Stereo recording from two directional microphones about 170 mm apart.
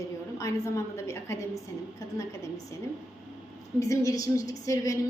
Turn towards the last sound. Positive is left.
turn(degrees=20)  # may be behind; listen again after turning